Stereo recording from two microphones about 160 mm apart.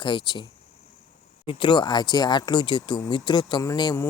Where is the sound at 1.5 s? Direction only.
30° left (ahead or behind).